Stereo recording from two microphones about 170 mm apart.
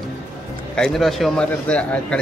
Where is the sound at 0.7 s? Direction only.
Centre (ahead or behind).